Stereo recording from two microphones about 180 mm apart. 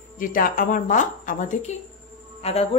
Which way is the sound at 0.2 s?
50° left (ahead or behind).